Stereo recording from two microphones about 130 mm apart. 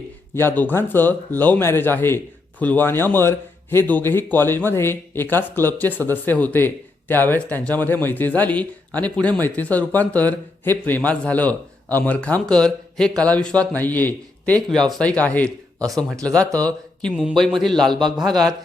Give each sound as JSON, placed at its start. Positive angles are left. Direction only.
{"t": 0.3, "sound": "a man's voice", "side_deg": 15}
{"t": 16.3, "sound": "speech", "side_deg": -25}
{"t": 17.0, "sound": "a man's voice", "side_deg": 0}